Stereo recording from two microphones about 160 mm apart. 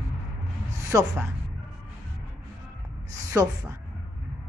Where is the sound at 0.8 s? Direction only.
20° right (ahead or behind).